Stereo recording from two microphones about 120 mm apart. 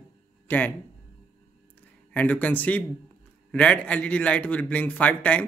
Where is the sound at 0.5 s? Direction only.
15° left (ahead or behind).